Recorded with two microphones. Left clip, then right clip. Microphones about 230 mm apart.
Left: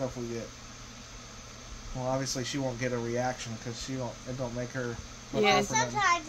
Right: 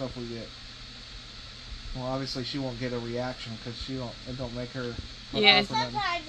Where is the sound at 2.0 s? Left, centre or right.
Left.